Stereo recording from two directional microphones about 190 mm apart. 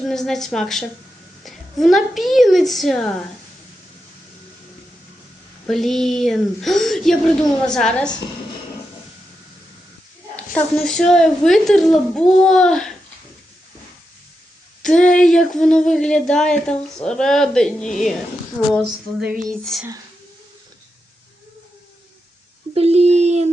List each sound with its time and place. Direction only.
0.0 s speech: centre (ahead or behind)
5.6 s speech: centre (ahead or behind)
10.3 s a sound: 5° left (ahead or behind)
10.8 s speech: 5° left (ahead or behind)
15.1 s speech: 5° left (ahead or behind)
22.7 s a sound: 35° right (ahead or behind)